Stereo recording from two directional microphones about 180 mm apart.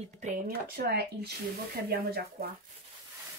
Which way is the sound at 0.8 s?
60° right (ahead or behind).